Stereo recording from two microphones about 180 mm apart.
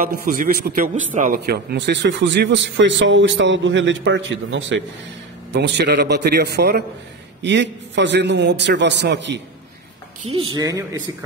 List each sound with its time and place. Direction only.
0.0 s a man's voice: 55° right (ahead or behind); by 4.8 s 90° right
5.5 s a man's voice: 75° right (ahead or behind)
7.4 s a man's voice: 75° right (ahead or behind)
10.3 s speech: 20° right (ahead or behind)